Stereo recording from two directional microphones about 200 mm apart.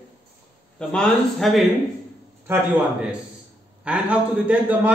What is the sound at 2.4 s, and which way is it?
A man's voice, 10° right (ahead or behind).